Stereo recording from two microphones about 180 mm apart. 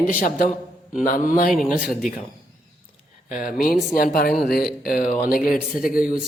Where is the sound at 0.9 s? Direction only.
45° left (ahead or behind).